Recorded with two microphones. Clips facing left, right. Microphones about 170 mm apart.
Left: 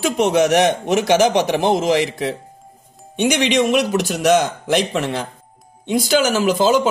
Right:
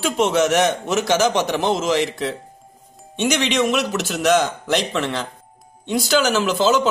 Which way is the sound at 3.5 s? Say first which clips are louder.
Left 3 dB; 50° left (ahead or behind).